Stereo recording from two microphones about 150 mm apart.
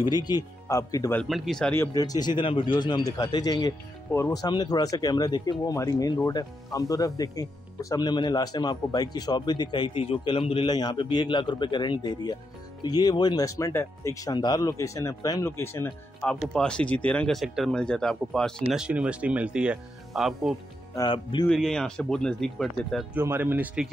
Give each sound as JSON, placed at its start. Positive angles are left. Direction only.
{"t": 0.0, "sound": "speech", "side_deg": 25}
{"t": 1.1, "sound": "speech", "side_deg": 0}
{"t": 1.8, "sound": "speech", "side_deg": 25}
{"t": 20.9, "sound": "speech", "side_deg": 30}
{"t": 21.5, "sound": "speech", "side_deg": 5}
{"t": 23.1, "sound": "speech", "side_deg": -15}